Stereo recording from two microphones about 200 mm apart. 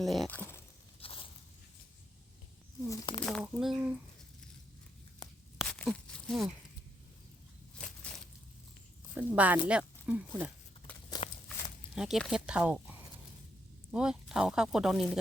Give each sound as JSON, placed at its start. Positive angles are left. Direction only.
{"t": 0.0, "sound": "speech", "side_deg": 0}
{"t": 0.9, "sound": "biting", "side_deg": 25}
{"t": 2.9, "sound": "speech", "side_deg": 20}
{"t": 3.4, "sound": "speech", "side_deg": -5}
{"t": 5.5, "sound": "tearing", "side_deg": 5}
{"t": 9.1, "sound": "speech", "side_deg": -5}
{"t": 11.2, "sound": "a sound", "side_deg": 20}
{"t": 11.9, "sound": "speech", "side_deg": 0}